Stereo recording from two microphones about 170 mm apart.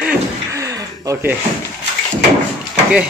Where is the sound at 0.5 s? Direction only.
20° right (ahead or behind).